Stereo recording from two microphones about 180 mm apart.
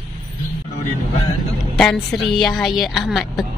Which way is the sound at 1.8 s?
5° left (ahead or behind).